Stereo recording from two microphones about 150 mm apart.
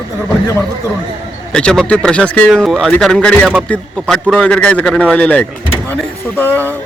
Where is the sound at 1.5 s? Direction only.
5° left (ahead or behind).